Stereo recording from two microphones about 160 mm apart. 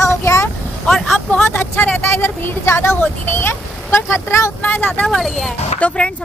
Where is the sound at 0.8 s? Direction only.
Centre (ahead or behind).